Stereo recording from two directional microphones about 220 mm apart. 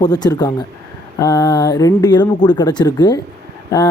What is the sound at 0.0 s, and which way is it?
Speech, 20° left (ahead or behind).